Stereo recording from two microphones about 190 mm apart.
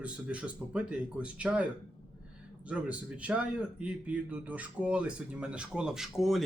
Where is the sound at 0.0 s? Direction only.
5° right (ahead or behind).